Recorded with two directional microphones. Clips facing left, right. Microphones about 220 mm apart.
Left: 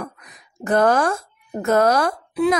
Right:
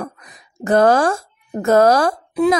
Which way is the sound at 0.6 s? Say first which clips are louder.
Right 4 dB; 30° right (ahead or behind).